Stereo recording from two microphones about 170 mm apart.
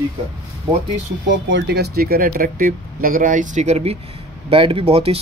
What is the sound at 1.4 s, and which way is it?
Speech, 85° right.